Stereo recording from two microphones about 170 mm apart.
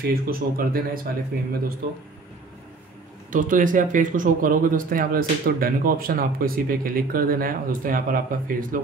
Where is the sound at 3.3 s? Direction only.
50° right (ahead or behind).